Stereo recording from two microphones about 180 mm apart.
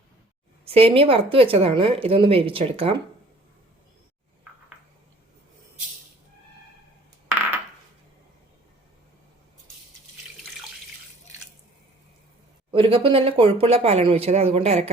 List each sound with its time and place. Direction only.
0.7 s speech: 30° right (ahead or behind)
12.7 s speech: 30° right (ahead or behind)